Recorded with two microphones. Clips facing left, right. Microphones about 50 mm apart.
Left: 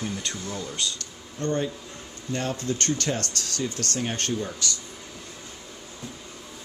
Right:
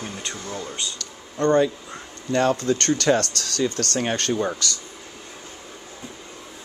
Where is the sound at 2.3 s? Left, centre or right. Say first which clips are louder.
Right 8 dB; right.